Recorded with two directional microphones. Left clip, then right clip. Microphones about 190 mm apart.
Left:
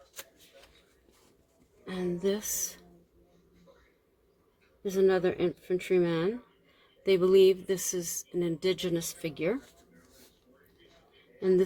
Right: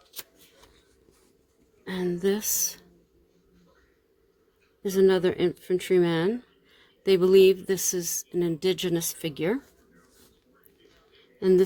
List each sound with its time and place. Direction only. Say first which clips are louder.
1.8 s speech: right 4 dB; 45° right (ahead or behind)
4.8 s speech: right 4 dB; 45° right (ahead or behind)
11.3 s a man's voice: right 5 dB; 45° right (ahead or behind)